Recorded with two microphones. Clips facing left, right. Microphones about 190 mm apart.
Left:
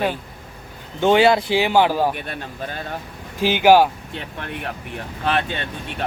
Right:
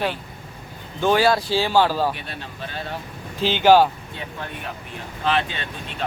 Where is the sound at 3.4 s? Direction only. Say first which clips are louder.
Left 1 dB; 10° left (ahead or behind).